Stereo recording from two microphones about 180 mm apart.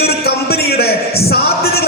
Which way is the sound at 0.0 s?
60° left (ahead or behind).